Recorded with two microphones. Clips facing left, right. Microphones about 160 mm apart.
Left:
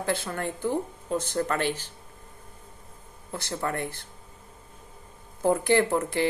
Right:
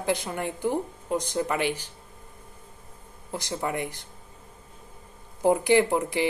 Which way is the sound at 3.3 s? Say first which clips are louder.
Right 1 dB; 15° right (ahead or behind).